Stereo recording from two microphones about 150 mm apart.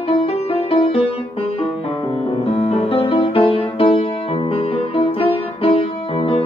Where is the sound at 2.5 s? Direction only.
40° left (ahead or behind).